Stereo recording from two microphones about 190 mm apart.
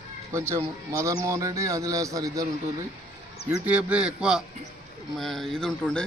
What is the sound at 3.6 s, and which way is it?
Speech, 5° right (ahead or behind).